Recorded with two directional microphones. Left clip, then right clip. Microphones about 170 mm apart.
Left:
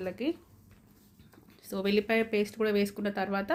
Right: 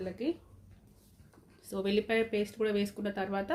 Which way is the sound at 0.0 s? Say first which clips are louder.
Left 2 dB; 15° left (ahead or behind).